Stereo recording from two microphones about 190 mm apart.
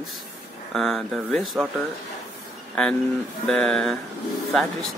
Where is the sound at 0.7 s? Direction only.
Centre (ahead or behind).